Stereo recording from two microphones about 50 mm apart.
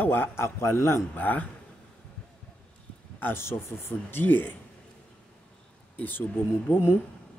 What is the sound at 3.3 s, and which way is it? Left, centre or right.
Speech, left.